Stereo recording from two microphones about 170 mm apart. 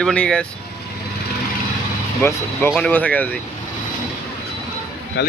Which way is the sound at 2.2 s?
15° left (ahead or behind).